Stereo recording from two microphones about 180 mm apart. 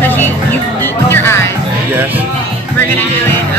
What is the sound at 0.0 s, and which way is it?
Music, 10° left (ahead or behind).